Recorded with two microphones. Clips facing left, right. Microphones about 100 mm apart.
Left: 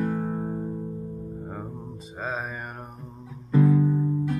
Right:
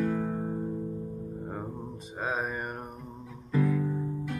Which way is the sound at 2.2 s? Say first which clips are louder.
Even; 5° right (ahead or behind).